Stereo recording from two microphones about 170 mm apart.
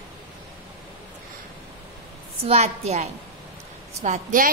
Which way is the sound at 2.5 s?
40° right (ahead or behind).